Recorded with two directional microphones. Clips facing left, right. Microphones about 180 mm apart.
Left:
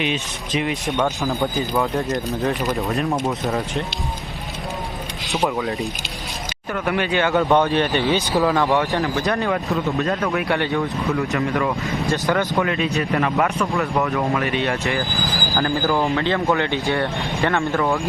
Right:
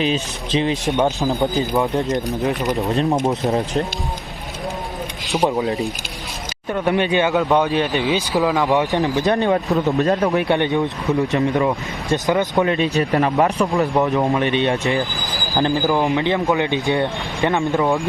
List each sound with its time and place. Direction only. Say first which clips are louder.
0.0 s a man's voice: right 3 dB; 30° right (ahead or behind)
5.3 s speech: right 3 dB; 20° right (ahead or behind)
9.7 s speech: right 4 dB; 35° right (ahead or behind); by 12.7 s 20° right (ahead or behind)
12.7 s a man's voice: right 3 dB; 35° right (ahead or behind)
13.9 s speech: right 3 dB; 20° right (ahead or behind)